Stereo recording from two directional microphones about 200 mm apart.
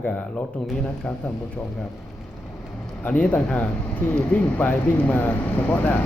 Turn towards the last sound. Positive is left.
turn(degrees=10)  # may be behind; listen again after turning